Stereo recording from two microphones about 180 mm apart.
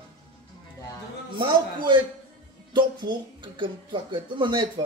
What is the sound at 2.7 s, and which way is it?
Speech, 25° right (ahead or behind).